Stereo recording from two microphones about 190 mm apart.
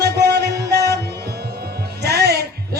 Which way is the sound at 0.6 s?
60° right (ahead or behind).